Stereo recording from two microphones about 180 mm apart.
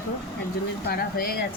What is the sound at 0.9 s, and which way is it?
Speech, 60° left (ahead or behind).